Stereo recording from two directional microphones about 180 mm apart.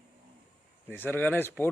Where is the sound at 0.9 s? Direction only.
10° left (ahead or behind).